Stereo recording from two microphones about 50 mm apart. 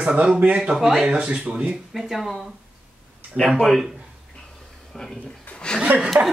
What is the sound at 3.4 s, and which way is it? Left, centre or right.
Speech, right.